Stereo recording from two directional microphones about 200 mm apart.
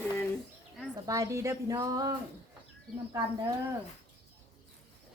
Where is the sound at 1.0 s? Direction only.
15° right (ahead or behind).